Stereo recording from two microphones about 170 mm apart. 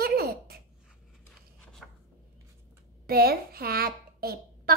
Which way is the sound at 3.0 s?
60° right (ahead or behind).